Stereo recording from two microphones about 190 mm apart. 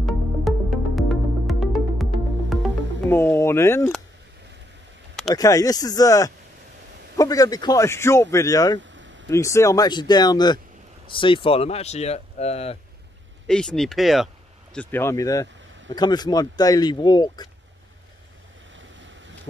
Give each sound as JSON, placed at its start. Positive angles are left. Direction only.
{"t": 0.0, "sound": "music", "side_deg": 0}
{"t": 3.1, "sound": "speech", "side_deg": 10}
{"t": 5.3, "sound": "speech", "side_deg": 20}
{"t": 8.9, "sound": "a sound", "side_deg": -75}
{"t": 9.3, "sound": "speech", "side_deg": 15}
{"t": 13.5, "sound": "speech", "side_deg": 5}
{"t": 18.8, "sound": "boat", "side_deg": -75}